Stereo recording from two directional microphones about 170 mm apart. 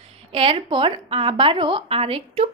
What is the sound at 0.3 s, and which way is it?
A woman's voice, 30° right (ahead or behind).